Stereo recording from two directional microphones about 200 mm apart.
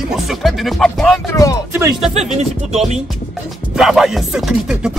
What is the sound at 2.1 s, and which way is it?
Speech, 35° right (ahead or behind).